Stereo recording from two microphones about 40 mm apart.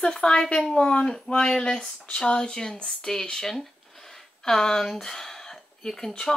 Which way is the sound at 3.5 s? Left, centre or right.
Centre.